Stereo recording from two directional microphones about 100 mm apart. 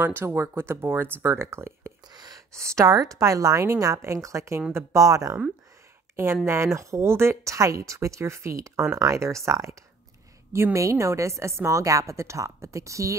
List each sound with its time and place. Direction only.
0.0 s speech: 25° right (ahead or behind)
2.1 s a sound: 40° right (ahead or behind)
2.5 s a woman's voice: 30° right (ahead or behind)